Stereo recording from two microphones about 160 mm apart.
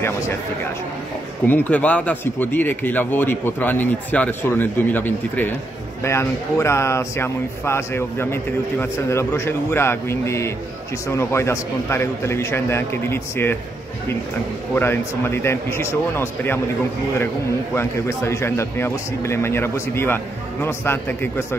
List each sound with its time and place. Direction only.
1.4 s speech: 10° left (ahead or behind)
14.8 s speech: 15° left (ahead or behind)
17.7 s speech: 15° left (ahead or behind)